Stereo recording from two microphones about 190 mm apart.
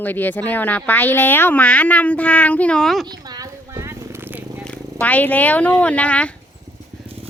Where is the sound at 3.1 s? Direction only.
20° right (ahead or behind).